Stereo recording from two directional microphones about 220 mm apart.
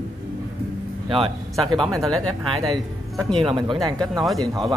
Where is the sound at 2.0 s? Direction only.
Centre (ahead or behind).